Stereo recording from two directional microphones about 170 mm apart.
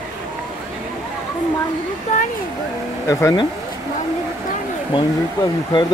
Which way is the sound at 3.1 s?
15° left (ahead or behind).